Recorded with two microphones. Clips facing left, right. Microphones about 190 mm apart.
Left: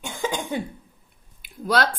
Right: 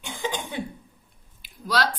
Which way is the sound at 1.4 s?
55° left (ahead or behind).